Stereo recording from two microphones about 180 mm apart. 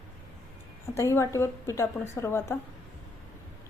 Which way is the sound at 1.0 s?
15° left (ahead or behind).